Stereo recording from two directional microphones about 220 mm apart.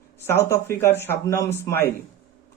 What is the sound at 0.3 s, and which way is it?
Speech, 10° left (ahead or behind).